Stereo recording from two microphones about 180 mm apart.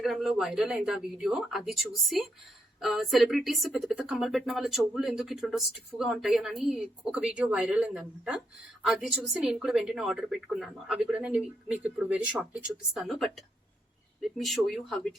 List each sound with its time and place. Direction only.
0.0 s speech: centre (ahead or behind)